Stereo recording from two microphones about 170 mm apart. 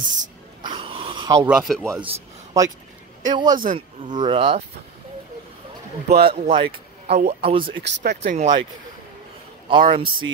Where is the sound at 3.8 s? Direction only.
25° right (ahead or behind).